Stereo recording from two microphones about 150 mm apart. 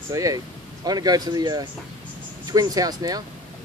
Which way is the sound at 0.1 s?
20° right (ahead or behind).